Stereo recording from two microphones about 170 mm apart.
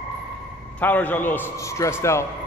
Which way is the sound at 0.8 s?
10° left (ahead or behind).